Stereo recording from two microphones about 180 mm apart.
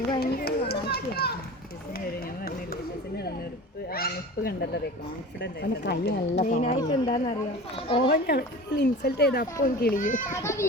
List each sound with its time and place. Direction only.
0.2 s children playing: 65° left (ahead or behind)
3.8 s a sound: 55° left (ahead or behind)
5.4 s speech: 65° left (ahead or behind)
6.4 s speech: 45° left (ahead or behind)
6.8 s speech: 25° left (ahead or behind)
8.0 s a woman's voice: 65° left (ahead or behind)
10.3 s a child's voice: 15° left (ahead or behind)